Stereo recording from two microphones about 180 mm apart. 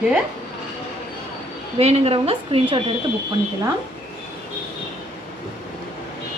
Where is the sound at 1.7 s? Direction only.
35° right (ahead or behind).